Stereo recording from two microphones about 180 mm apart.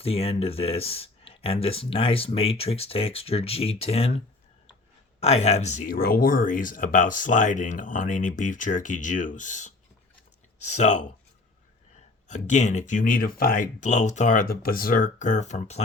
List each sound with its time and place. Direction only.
0.0 s speech: 35° left (ahead or behind)
5.2 s speech: 35° left (ahead or behind)
12.3 s speech: 40° left (ahead or behind)